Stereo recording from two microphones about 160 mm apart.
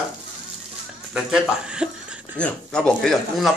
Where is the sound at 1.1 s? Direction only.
5° right (ahead or behind).